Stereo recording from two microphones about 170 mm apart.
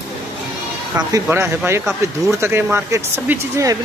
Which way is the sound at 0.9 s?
15° right (ahead or behind).